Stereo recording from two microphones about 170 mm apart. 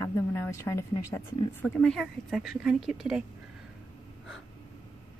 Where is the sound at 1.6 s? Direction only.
5° left (ahead or behind).